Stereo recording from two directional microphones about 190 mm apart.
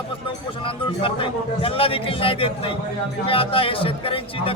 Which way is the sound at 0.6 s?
25° left (ahead or behind).